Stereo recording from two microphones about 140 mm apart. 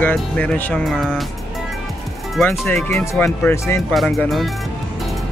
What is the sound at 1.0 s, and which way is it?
Speech, 5° right (ahead or behind).